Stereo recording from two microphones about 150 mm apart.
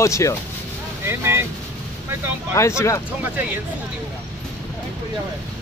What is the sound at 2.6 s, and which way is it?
Speech, 20° left (ahead or behind).